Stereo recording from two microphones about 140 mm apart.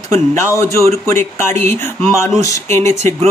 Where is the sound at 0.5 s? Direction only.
20° left (ahead or behind).